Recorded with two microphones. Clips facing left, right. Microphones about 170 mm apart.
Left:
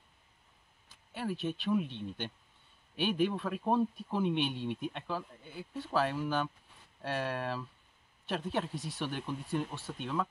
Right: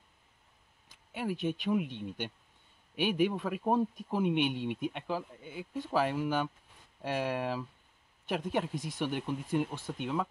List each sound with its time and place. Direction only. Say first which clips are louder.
1.1 s speech: right 2 dB; 15° right (ahead or behind)